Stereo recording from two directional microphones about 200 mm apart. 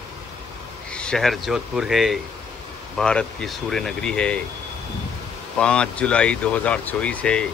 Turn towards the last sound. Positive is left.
turn(degrees=5)  # may be behind; listen again after turning